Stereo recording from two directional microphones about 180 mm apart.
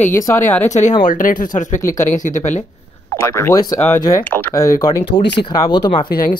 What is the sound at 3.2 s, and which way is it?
Speech, 15° left (ahead or behind).